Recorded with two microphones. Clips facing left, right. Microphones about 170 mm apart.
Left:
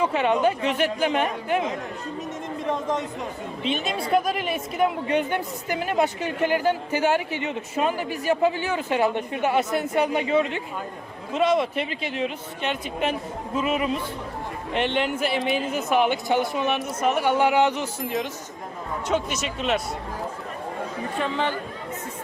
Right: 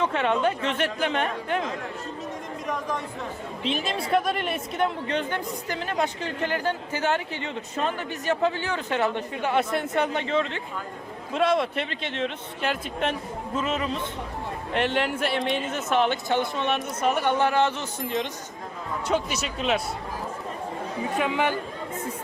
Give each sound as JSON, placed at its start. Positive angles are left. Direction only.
{"t": 0.0, "sound": "speech", "side_deg": 5}
{"t": 2.6, "sound": "speech", "side_deg": 25}
{"t": 4.1, "sound": "a woman's voice", "side_deg": 0}
{"t": 14.7, "sound": "a woman's voice", "side_deg": 0}
{"t": 18.0, "sound": "speech", "side_deg": 0}
{"t": 21.2, "sound": "speech", "side_deg": -10}